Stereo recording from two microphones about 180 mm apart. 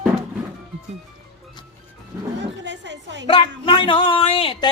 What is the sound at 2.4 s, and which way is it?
Speech, 80° right.